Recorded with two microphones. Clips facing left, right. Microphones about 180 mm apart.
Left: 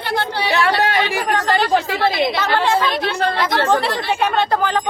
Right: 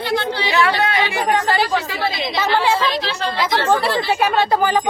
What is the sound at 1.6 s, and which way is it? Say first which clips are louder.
A woman's voice: left 4 dB; 55° left (ahead or behind).